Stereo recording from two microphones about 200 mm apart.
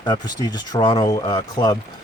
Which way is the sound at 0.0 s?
20° left (ahead or behind).